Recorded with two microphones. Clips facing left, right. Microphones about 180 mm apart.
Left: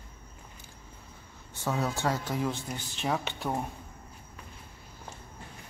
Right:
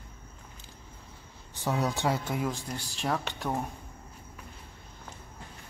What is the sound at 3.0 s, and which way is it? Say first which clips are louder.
Speech: even; centre (ahead or behind).